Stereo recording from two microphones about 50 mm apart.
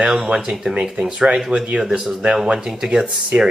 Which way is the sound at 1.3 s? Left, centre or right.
Centre.